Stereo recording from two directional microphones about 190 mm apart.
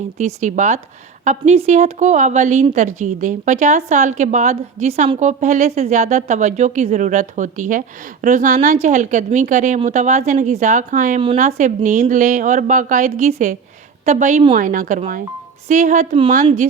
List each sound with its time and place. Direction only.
0.2 s a woman's voice: 35° right (ahead or behind)